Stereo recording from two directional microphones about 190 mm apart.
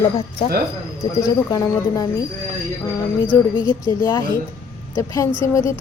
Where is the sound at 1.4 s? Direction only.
20° left (ahead or behind).